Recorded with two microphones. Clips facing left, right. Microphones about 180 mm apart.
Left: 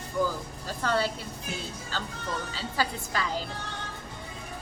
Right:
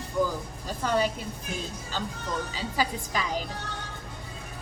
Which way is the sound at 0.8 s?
15° right (ahead or behind).